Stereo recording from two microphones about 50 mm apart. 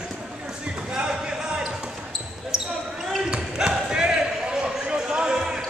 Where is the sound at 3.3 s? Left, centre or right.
Centre.